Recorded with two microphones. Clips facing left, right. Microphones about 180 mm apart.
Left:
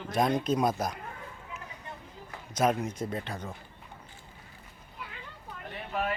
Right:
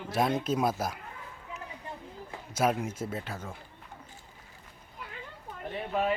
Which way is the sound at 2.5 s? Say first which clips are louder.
Left 1 dB; 10° right (ahead or behind).